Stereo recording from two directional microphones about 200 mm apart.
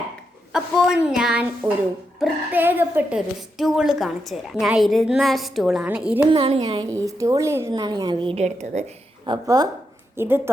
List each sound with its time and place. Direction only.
0.5 s a woman's voice: 5° right (ahead or behind)
6.3 s a woman's voice: 30° right (ahead or behind)
9.2 s a woman's voice: 20° right (ahead or behind)